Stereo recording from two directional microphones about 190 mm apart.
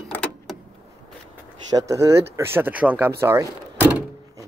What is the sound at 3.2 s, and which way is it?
Door, 15° right (ahead or behind).